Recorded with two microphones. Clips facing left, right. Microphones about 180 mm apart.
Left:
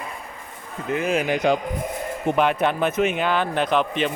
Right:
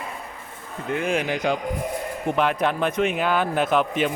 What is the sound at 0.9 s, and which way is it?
Speech, 5° left (ahead or behind).